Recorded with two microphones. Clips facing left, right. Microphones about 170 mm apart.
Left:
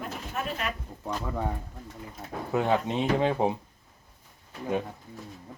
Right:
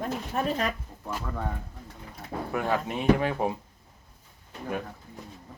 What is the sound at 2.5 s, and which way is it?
Speech, 20° left (ahead or behind).